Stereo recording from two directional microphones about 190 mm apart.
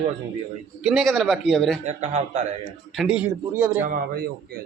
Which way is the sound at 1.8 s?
35° right (ahead or behind).